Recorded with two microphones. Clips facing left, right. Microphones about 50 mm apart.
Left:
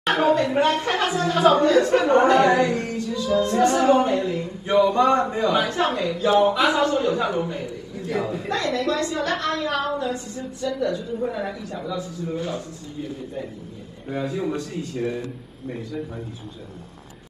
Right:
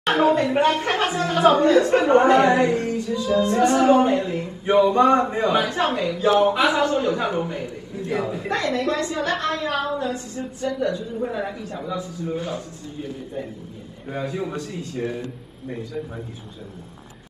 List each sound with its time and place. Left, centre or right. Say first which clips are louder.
0.1 s a woman's voice: right 1 dB; right
3.4 s a sound: right 1 dB; right
6.5 s a woman's voice: even; right
14.1 s a woman's voice: left 2 dB; right